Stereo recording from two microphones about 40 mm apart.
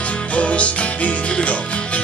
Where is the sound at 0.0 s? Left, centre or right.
Left.